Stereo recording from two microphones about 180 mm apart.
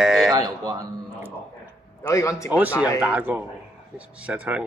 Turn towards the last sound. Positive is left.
turn(degrees=-10)  # may be behind; listen again after turning